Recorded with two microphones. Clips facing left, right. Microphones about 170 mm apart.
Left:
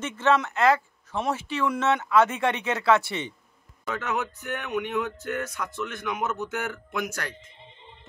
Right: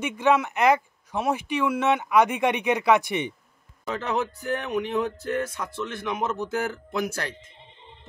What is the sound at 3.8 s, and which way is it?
A man's voice, 30° right (ahead or behind).